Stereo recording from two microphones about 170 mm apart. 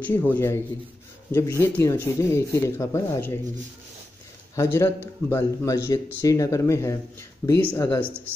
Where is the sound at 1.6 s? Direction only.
15° left (ahead or behind).